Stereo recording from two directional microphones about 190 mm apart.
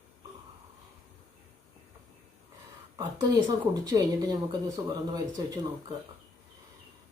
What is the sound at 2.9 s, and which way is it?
Speech, 20° right (ahead or behind).